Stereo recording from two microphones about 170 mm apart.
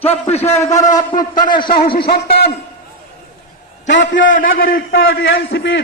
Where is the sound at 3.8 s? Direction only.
90° left; by 5.8 s 65° left (ahead or behind).